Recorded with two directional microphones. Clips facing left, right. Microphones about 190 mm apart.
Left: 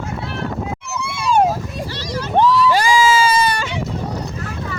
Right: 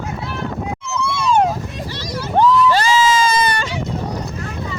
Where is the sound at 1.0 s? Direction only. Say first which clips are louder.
Even; 15° left (ahead or behind).